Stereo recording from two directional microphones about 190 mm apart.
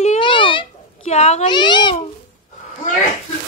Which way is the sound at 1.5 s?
25° left (ahead or behind).